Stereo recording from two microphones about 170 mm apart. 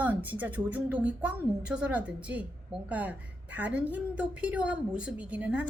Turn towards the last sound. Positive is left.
turn(degrees=-10)  # may be behind; listen again after turning